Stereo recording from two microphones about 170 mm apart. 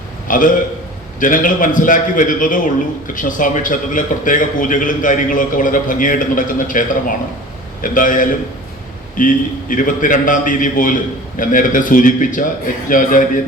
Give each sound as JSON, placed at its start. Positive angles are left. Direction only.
{"t": 0.3, "sound": "a man's voice", "side_deg": 50}